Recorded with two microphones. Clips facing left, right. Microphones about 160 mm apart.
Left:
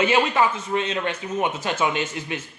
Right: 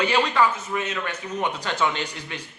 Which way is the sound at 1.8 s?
15° left (ahead or behind).